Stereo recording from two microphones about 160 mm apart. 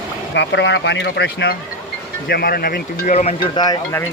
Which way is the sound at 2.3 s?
70° left (ahead or behind).